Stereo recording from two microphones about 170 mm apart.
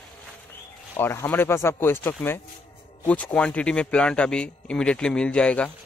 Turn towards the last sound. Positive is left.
turn(degrees=5)  # may be behind; listen again after turning